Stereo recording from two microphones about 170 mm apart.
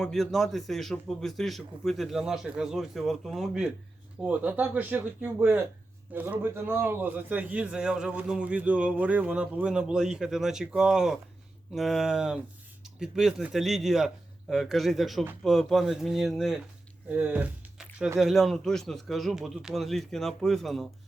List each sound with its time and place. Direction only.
0.0 s a man's voice: centre (ahead or behind)